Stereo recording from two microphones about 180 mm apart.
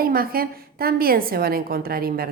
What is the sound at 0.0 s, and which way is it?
A woman's voice, 55° right (ahead or behind).